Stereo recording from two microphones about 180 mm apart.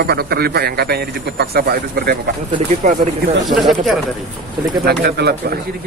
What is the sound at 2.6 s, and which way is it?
Speech, 45° right (ahead or behind).